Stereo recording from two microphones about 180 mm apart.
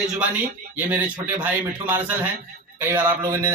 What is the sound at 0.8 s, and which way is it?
A man's voice, 10° right (ahead or behind).